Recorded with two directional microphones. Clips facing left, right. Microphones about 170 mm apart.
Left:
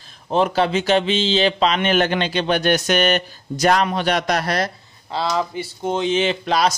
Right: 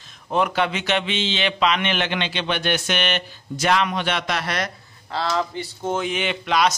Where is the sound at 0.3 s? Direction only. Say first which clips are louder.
Left 4 dB; 30° left (ahead or behind).